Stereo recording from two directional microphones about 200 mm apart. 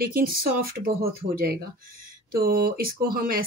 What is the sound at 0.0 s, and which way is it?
Speech, 45° right (ahead or behind).